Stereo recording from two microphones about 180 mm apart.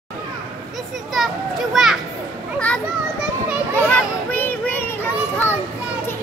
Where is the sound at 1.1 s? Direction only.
Centre (ahead or behind).